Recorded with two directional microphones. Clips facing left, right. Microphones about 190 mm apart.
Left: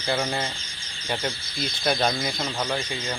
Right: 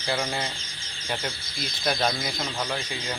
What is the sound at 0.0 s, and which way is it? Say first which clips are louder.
Speech: left 2 dB; centre (ahead or behind).